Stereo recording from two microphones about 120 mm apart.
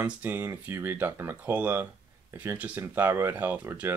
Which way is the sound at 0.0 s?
15° right (ahead or behind).